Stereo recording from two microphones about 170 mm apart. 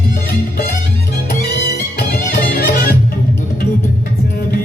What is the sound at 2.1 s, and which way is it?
Music, 60° left (ahead or behind).